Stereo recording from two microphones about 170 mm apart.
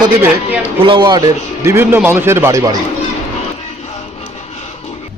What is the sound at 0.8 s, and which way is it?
A man's voice, 30° right (ahead or behind).